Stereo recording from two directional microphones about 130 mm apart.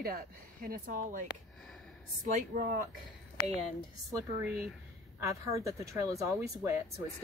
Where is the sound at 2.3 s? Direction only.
90° right.